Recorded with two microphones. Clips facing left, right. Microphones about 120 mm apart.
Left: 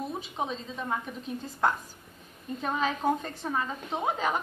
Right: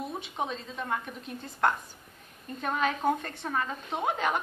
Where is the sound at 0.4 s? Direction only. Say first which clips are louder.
Even; centre (ahead or behind).